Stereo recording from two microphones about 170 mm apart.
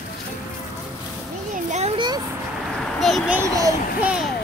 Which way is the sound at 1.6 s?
40° right (ahead or behind).